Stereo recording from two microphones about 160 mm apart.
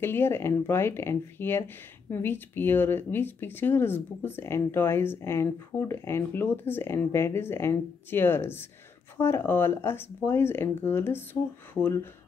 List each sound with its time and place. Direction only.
0.0 s speech: 15° left (ahead or behind)